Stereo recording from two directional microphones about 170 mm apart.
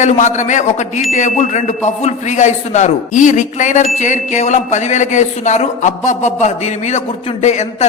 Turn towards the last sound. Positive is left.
turn(degrees=45)  # may be behind; listen again after turning